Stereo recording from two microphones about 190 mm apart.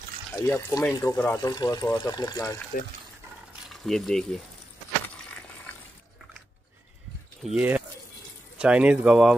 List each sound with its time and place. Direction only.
0.4 s speech: 15° left (ahead or behind)
3.6 s speech: centre (ahead or behind)
7.4 s speech: 5° right (ahead or behind)